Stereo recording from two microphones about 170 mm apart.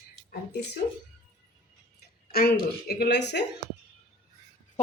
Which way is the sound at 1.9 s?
65° left (ahead or behind).